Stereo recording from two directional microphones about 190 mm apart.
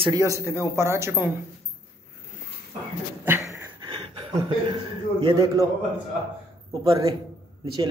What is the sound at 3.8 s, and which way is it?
Chuckle, 30° right (ahead or behind).